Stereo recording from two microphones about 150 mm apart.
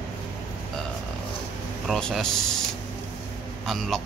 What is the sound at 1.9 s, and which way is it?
Speech, 5° left (ahead or behind).